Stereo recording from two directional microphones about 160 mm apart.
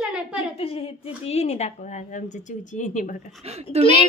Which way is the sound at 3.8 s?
40° right (ahead or behind).